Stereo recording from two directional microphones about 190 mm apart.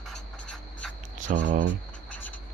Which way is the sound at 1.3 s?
45° right (ahead or behind).